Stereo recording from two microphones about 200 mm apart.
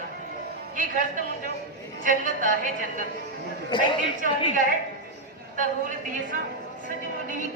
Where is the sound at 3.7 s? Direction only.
25° left (ahead or behind).